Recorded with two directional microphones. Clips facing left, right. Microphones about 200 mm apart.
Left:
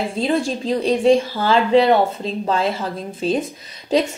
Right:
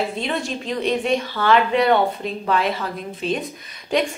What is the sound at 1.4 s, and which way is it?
A woman's voice, 25° left (ahead or behind).